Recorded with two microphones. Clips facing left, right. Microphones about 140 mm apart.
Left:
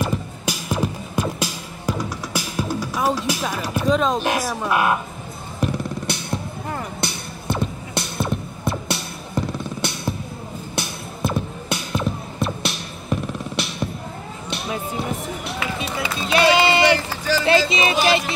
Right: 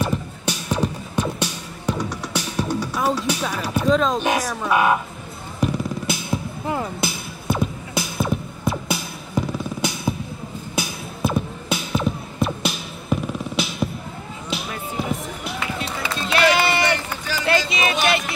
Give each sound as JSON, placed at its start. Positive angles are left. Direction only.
{"t": 0.0, "sound": "music", "side_deg": 5}
{"t": 16.3, "sound": "run", "side_deg": 20}
{"t": 17.5, "sound": "music", "side_deg": 25}